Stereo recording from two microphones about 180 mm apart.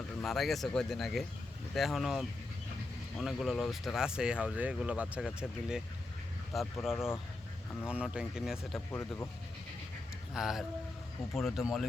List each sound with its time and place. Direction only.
0.2 s speech: centre (ahead or behind)
6.8 s speech: centre (ahead or behind)
10.3 s speech: centre (ahead or behind)